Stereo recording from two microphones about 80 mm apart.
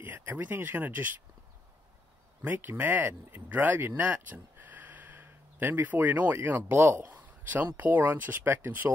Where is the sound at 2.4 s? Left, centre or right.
Right.